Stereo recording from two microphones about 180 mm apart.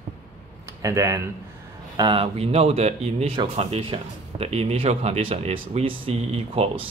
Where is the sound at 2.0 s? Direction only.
30° right (ahead or behind).